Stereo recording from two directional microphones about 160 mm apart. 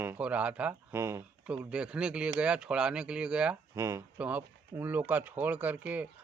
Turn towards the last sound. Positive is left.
turn(degrees=-10)  # may be behind; listen again after turning